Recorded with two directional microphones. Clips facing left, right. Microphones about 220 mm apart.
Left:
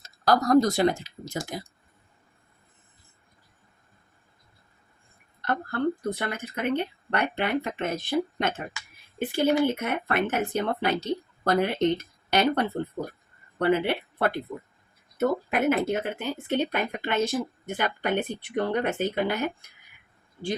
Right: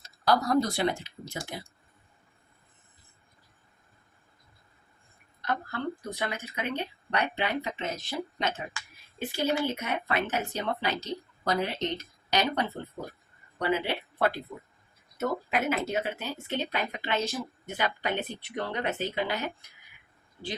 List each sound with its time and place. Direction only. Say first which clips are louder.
0.0 s speech: left 3 dB; 45° left (ahead or behind)
5.5 s speech: left 6 dB; 55° left (ahead or behind)